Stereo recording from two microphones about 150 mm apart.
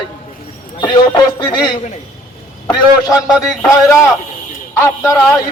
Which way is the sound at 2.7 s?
25° left (ahead or behind).